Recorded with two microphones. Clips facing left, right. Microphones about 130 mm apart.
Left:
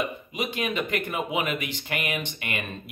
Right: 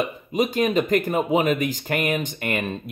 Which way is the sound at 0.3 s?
40° right (ahead or behind).